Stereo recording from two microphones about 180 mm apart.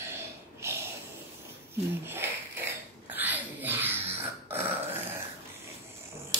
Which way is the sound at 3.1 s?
10° right (ahead or behind).